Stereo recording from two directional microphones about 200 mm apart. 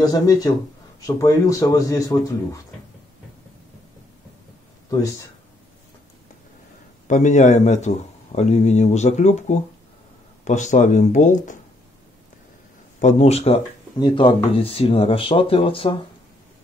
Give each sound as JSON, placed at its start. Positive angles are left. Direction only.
{"t": 0.0, "sound": "speech", "side_deg": 20}
{"t": 7.1, "sound": "speech", "side_deg": 40}
{"t": 13.0, "sound": "speech", "side_deg": 30}